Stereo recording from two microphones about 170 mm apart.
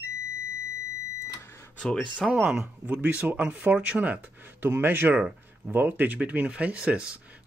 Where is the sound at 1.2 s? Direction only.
15° left (ahead or behind).